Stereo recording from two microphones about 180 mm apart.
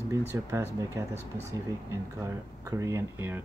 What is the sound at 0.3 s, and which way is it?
Speech, 15° right (ahead or behind).